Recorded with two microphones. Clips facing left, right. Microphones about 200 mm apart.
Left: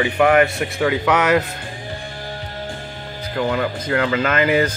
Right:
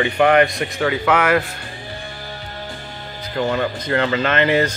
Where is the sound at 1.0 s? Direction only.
15° left (ahead or behind).